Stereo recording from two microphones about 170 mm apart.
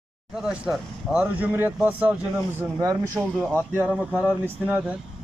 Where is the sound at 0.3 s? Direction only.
5° right (ahead or behind).